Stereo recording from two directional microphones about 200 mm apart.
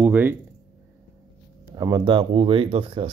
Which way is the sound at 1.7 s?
20° right (ahead or behind).